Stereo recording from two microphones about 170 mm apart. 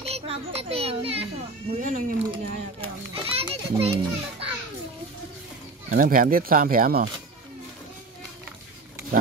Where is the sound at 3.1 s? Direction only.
35° right (ahead or behind).